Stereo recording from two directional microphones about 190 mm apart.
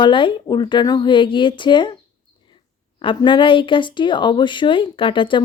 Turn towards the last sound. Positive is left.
turn(degrees=25)  # may be behind; listen again after turning